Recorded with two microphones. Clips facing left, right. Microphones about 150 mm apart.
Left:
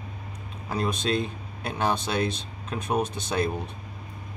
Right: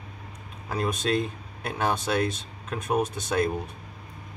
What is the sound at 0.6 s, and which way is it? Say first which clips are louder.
Speech: even; 5° right (ahead or behind).